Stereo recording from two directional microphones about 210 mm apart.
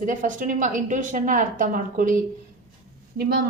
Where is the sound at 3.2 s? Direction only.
45° right (ahead or behind).